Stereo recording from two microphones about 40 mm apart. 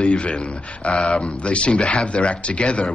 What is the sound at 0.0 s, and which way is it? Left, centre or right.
Speech, left.